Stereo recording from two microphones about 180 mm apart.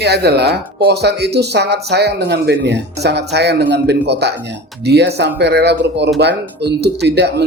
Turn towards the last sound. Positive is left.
turn(degrees=-65)  # may be behind; listen again after turning